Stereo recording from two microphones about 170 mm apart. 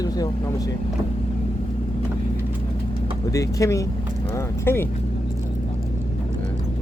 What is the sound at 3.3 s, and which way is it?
Speech, 20° left (ahead or behind).